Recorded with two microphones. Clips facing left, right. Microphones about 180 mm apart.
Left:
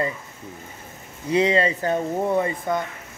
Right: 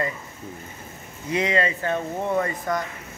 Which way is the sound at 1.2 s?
30° left (ahead or behind).